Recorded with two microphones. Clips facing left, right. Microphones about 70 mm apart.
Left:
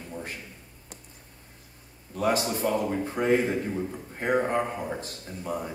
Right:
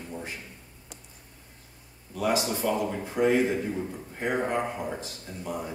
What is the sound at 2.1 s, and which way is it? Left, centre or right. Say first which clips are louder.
Speech: left 1 dB; left.